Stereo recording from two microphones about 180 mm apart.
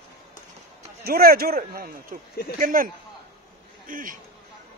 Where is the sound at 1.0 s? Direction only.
55° right (ahead or behind).